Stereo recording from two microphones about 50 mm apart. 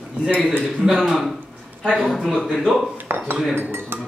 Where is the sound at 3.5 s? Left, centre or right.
Right.